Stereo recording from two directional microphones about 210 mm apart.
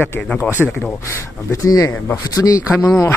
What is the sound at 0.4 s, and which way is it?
Speech, 10° right (ahead or behind).